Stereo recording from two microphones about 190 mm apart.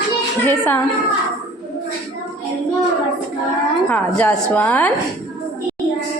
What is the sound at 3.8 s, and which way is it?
A woman's voice, 10° left (ahead or behind).